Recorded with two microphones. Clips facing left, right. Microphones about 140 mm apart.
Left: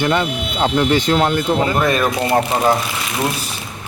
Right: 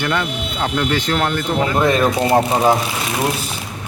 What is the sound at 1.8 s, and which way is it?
Speech, 20° right (ahead or behind).